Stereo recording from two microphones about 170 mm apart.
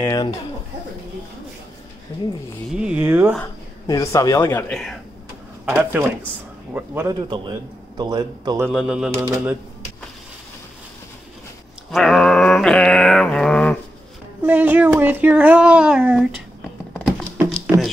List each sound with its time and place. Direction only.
0.0 s speech: 20° left (ahead or behind)
2.7 s speech: 5° right (ahead or behind)
3.8 s speech: 20° left (ahead or behind)
5.7 s speech: 10° right (ahead or behind)
7.2 s a man's voice: 30° right (ahead or behind)
8.6 s pigeon: centre (ahead or behind)
9.1 s speech: 10° right (ahead or behind)
11.9 s a sound: centre (ahead or behind)
14.4 s speech: 10° right (ahead or behind)